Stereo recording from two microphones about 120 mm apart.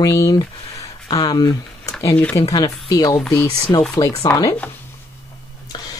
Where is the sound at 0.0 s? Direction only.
30° left (ahead or behind).